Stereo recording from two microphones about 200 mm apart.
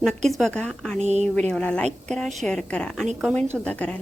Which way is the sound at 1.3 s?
5° left (ahead or behind).